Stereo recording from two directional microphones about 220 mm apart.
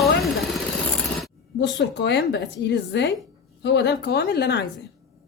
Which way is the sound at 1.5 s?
55° left (ahead or behind).